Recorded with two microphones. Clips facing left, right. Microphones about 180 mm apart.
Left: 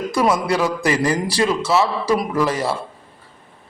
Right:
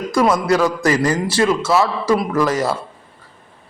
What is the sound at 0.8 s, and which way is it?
A man's voice, 30° left (ahead or behind).